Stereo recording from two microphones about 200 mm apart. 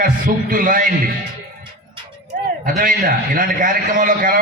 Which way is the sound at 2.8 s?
45° right (ahead or behind).